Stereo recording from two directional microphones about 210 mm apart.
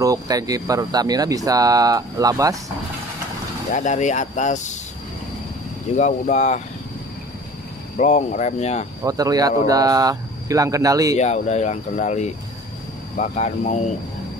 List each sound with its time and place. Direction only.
0.0 s speech: 15° right (ahead or behind)
3.7 s speech: 35° left (ahead or behind)
5.9 s speech: 35° left (ahead or behind)
8.0 s speech: 35° left (ahead or behind)
9.0 s speech: 15° right (ahead or behind)
11.1 s speech: 30° left (ahead or behind)